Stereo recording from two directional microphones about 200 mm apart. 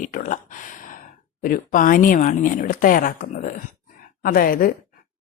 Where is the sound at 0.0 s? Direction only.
40° left (ahead or behind).